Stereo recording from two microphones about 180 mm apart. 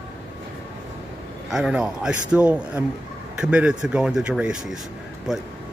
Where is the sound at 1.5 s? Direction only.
5° right (ahead or behind).